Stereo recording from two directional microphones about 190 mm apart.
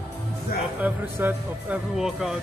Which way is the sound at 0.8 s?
10° right (ahead or behind).